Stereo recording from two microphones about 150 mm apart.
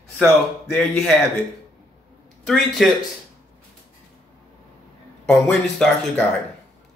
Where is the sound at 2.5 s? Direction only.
Centre (ahead or behind).